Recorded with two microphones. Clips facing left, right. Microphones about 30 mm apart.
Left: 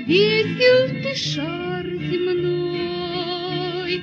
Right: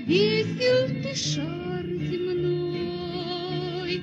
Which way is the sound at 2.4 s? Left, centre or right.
Left.